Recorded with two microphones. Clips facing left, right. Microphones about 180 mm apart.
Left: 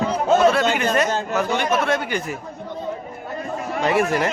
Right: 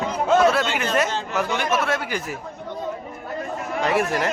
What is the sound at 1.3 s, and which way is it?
Speech, 5° right (ahead or behind).